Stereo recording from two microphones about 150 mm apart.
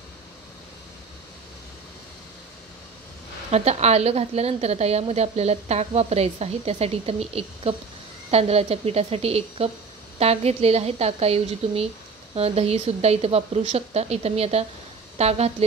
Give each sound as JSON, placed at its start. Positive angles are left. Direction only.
{"t": 3.5, "sound": "a woman's voice", "side_deg": -45}